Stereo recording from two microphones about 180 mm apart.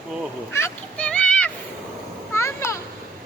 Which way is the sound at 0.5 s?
10° left (ahead or behind).